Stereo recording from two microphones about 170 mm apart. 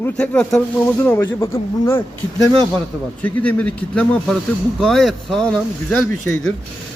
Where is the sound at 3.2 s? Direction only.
10° left (ahead or behind).